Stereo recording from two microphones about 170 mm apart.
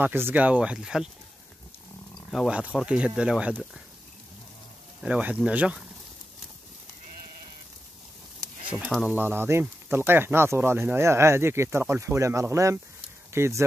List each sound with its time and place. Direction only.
0.0 s speech: 10° right (ahead or behind)
2.1 s speech: centre (ahead or behind)
5.0 s speech: 5° right (ahead or behind)
8.4 s a sound: 5° right (ahead or behind)
9.0 s speech: 10° right (ahead or behind)